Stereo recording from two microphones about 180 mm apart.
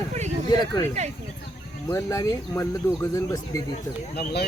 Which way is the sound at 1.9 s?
15° left (ahead or behind).